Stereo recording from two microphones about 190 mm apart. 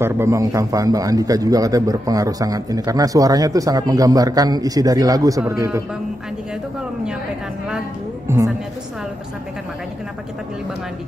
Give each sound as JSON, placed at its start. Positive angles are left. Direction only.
{"t": 0.0, "sound": "a man's voice", "side_deg": -15}
{"t": 8.3, "sound": "a woman's voice", "side_deg": -15}